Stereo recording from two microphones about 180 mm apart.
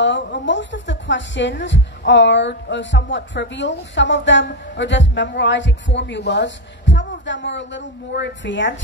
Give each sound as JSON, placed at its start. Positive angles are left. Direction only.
{"t": 0.0, "sound": "a woman's voice", "side_deg": 85}